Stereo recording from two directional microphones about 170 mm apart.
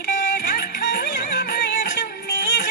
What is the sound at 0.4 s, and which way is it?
Music, 65° left (ahead or behind).